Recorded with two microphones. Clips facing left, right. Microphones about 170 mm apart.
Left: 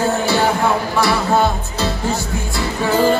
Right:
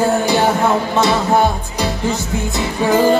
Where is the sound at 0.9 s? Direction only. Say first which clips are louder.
Right 2 dB; 20° right (ahead or behind).